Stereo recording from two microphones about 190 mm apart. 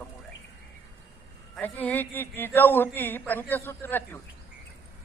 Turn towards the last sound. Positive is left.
turn(degrees=10)  # may be behind; listen again after turning